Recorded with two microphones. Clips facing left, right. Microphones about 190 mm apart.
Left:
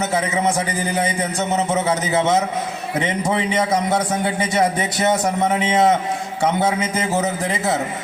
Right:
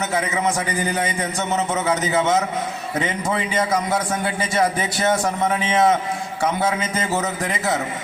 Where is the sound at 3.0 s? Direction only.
25° left (ahead or behind).